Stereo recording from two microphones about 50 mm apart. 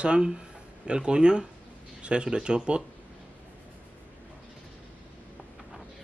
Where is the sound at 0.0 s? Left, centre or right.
Centre.